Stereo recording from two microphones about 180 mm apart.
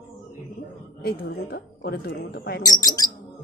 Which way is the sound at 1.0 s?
60° left (ahead or behind).